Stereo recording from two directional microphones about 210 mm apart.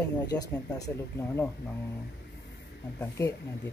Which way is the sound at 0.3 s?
15° left (ahead or behind).